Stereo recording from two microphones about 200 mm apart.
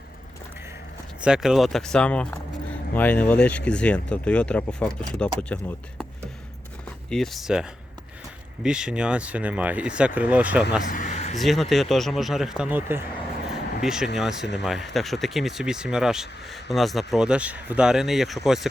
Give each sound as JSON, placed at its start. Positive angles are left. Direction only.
{"t": 1.2, "sound": "speech", "side_deg": -5}
{"t": 7.1, "sound": "speech", "side_deg": 0}
{"t": 10.9, "sound": "a sound", "side_deg": 40}
{"t": 11.3, "sound": "speech", "side_deg": 0}